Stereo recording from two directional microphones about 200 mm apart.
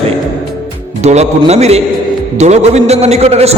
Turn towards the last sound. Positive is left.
turn(degrees=-30)  # may be behind; listen again after turning